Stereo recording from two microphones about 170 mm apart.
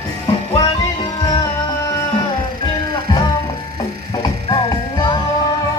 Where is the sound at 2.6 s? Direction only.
25° left (ahead or behind).